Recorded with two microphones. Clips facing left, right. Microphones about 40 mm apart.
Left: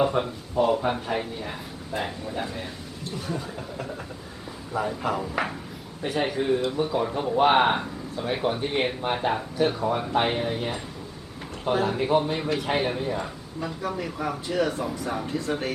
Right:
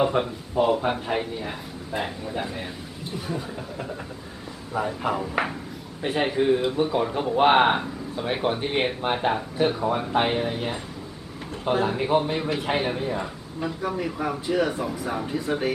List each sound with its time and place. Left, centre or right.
0.0 s a man's voice: centre
6.0 s a man's voice: right; by 15.7 s centre